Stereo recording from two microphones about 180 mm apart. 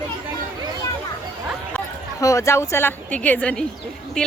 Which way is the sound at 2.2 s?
15° left (ahead or behind).